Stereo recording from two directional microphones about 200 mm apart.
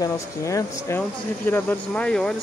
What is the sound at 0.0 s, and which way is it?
Speech, 15° left (ahead or behind).